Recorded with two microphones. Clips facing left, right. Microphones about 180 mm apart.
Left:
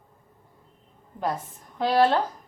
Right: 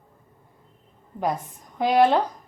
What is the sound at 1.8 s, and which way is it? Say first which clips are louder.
Speech: right 2 dB; 15° right (ahead or behind).